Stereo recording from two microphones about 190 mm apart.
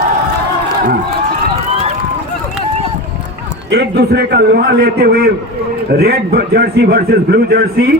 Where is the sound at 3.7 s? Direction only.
55° right (ahead or behind).